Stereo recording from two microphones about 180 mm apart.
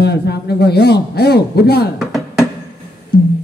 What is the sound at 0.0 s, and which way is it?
A man's voice, 65° left (ahead or behind).